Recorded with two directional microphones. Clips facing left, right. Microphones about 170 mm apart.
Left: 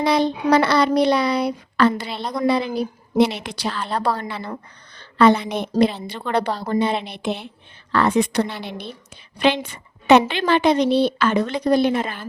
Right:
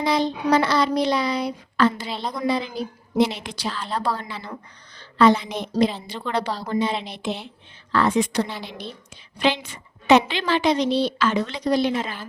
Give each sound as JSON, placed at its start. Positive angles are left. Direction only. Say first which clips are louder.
{"t": 0.0, "sound": "speech", "louder": "left 3 dB", "side_deg": 65}